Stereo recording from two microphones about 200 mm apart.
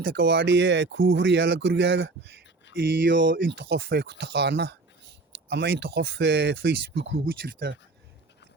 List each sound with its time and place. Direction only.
0.2 s speech: 60° right (ahead or behind)